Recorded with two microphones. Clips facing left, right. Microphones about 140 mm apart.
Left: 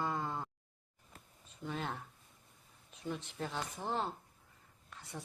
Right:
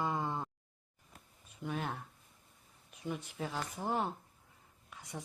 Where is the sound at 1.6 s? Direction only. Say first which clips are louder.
Right 2 dB; 5° right (ahead or behind).